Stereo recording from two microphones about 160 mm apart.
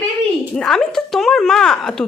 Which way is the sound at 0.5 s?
5° left (ahead or behind).